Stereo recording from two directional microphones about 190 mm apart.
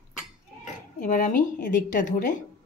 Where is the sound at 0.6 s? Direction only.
45° left (ahead or behind).